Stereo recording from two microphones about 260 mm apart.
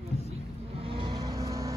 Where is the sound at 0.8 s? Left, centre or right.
Centre.